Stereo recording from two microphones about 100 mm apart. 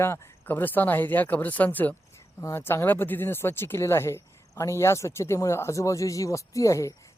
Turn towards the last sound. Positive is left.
turn(degrees=30)  # may be behind; listen again after turning